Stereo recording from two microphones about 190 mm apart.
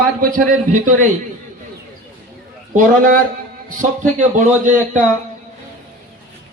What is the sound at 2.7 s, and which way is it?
A man's voice, 45° right (ahead or behind).